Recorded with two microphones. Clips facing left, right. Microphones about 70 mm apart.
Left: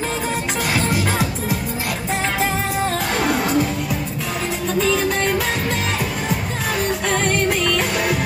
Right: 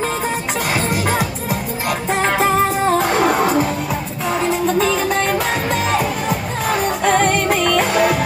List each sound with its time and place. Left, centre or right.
0.7 s music: right
1.9 s music: right
5.7 s music: right